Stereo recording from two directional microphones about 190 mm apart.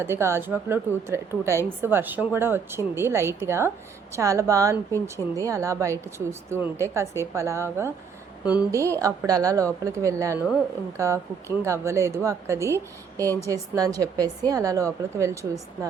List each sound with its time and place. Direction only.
0.0 s a woman's voice: 15° right (ahead or behind)